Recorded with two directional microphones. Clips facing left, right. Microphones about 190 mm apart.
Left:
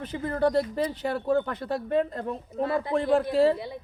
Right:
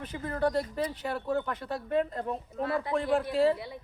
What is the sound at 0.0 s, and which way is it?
Speech, 35° left (ahead or behind).